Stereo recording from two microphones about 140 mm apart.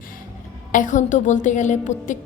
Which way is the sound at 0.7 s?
65° left (ahead or behind).